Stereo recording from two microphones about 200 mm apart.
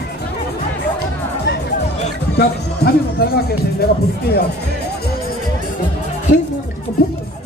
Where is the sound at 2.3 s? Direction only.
55° left (ahead or behind).